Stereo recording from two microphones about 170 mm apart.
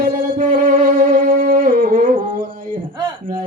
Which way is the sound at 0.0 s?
55° right (ahead or behind).